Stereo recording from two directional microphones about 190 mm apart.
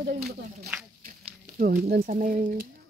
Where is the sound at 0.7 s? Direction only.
5° right (ahead or behind).